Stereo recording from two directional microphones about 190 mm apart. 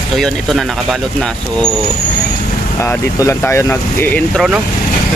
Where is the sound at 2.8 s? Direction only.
15° left (ahead or behind).